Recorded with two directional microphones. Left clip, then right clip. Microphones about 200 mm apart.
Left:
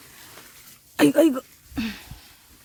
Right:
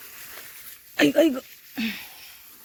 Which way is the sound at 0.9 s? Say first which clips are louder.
Left 1 dB; 35° left (ahead or behind).